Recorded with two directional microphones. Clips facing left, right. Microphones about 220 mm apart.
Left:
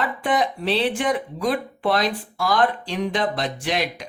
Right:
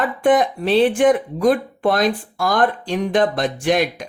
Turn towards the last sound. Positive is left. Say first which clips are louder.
# right 7 dB
turn(degrees=-50)  # may be behind; listen again after turning